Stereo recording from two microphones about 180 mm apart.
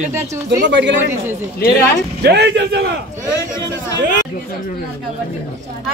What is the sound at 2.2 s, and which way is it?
Speech, 70° right (ahead or behind).